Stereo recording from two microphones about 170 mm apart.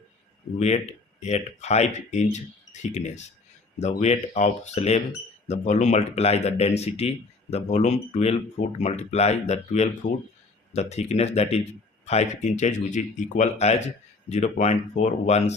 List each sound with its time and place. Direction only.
1.2 s speech: 40° left (ahead or behind)